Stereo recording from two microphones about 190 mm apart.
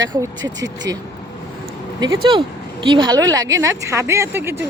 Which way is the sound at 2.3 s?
25° right (ahead or behind).